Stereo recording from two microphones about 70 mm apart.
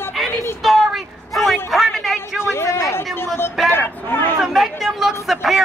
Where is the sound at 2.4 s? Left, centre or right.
Left.